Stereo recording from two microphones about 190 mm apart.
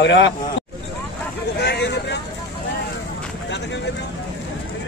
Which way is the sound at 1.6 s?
60° left (ahead or behind).